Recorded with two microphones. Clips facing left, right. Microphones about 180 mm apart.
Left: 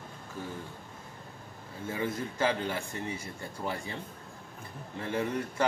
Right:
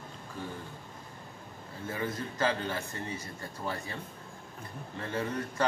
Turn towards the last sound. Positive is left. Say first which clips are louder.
# left 2 dB
turn(degrees=15)  # may be behind; listen again after turning